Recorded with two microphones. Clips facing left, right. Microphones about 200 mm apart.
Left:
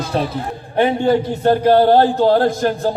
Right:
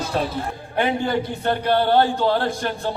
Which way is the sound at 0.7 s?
30° left (ahead or behind).